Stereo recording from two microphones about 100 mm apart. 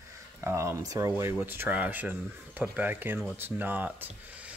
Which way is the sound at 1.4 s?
20° right (ahead or behind).